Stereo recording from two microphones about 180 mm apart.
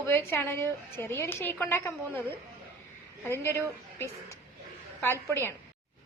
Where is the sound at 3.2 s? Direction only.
15° left (ahead or behind).